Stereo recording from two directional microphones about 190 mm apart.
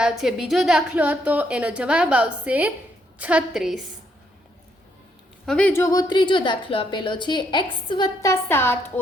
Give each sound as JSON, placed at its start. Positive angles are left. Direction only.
{"t": 0.0, "sound": "a woman's voice", "side_deg": 0}
{"t": 5.5, "sound": "a woman's voice", "side_deg": 5}